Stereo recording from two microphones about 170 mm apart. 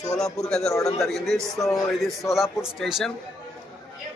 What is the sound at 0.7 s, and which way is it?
Speech, 20° left (ahead or behind).